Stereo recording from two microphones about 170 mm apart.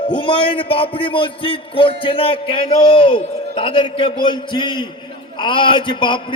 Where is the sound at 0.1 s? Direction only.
30° left (ahead or behind).